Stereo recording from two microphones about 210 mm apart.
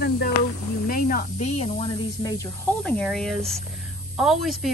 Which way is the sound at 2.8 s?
5° left (ahead or behind).